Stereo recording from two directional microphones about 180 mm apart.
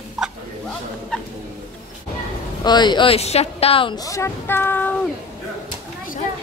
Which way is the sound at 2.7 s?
25° left (ahead or behind).